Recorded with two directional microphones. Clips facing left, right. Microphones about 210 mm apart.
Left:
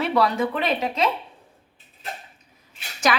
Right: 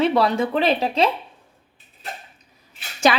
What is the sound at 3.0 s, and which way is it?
Speech, 25° right (ahead or behind).